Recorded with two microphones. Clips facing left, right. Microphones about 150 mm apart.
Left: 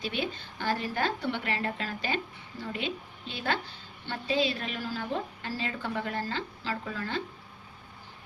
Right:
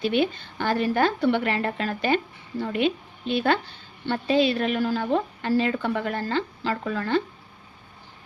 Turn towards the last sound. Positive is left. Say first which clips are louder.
# right 9 dB
turn(degrees=-70)  # may be behind; listen again after turning